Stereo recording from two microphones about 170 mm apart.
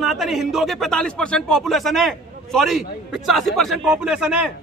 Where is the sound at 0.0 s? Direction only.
Centre (ahead or behind).